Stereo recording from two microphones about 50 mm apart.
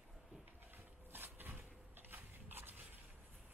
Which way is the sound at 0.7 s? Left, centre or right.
Right.